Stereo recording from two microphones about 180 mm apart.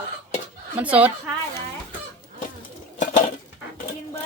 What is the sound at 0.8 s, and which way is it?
Speech, 10° right (ahead or behind).